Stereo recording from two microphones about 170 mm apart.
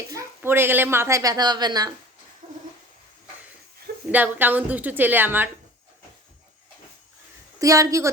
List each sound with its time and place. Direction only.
0.1 s a woman's voice: 15° right (ahead or behind)
2.4 s a sound: 35° right (ahead or behind)
4.1 s a woman's voice: 10° right (ahead or behind)
7.6 s a woman's voice: 20° right (ahead or behind)